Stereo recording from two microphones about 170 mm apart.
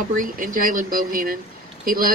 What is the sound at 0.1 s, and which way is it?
Speech, 50° right (ahead or behind).